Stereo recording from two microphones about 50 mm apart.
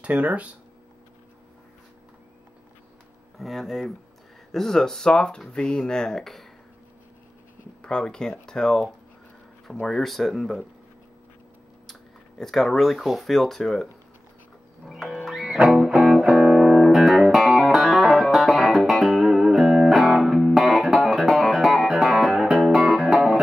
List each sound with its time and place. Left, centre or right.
0.0 s speech: right
3.3 s speech: centre
7.8 s speech: centre
11.9 s speech: centre
15.3 s music: centre